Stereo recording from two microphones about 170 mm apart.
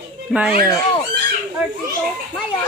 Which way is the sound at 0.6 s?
20° left (ahead or behind).